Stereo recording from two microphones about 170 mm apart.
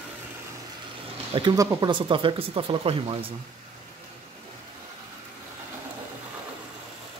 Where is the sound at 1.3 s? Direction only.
25° right (ahead or behind).